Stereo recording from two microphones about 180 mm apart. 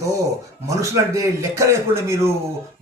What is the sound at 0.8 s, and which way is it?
A man's voice, 15° right (ahead or behind).